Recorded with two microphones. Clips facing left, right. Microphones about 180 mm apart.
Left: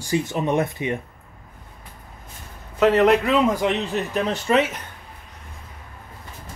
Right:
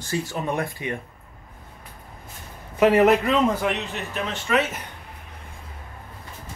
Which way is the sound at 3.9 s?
35° left (ahead or behind).